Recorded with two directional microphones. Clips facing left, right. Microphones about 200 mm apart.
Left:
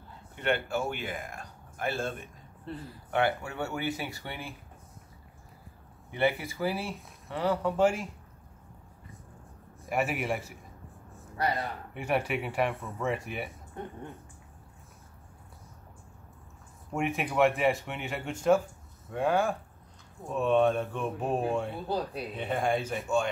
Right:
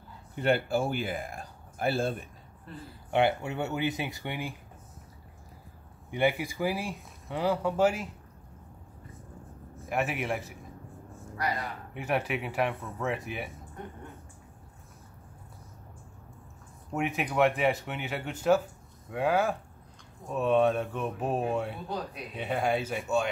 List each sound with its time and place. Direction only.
0.4 s speech: 35° right (ahead or behind)
2.7 s speech: 30° left (ahead or behind)
3.2 s speech: 20° right (ahead or behind)
6.1 s speech: 15° right (ahead or behind)
9.8 s a man's voice: centre (ahead or behind)
11.9 s speech: centre (ahead or behind)
16.9 s speech: centre (ahead or behind)
21.8 s speech: 30° left (ahead or behind)
22.4 s speech: 5° right (ahead or behind)